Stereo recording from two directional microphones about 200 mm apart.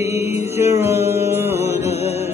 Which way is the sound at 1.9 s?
30° left (ahead or behind).